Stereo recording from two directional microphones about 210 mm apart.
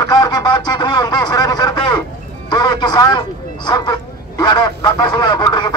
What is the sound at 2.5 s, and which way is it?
Music, 20° left (ahead or behind).